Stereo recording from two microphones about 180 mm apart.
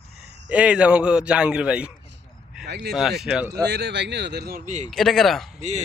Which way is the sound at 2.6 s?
65° right (ahead or behind).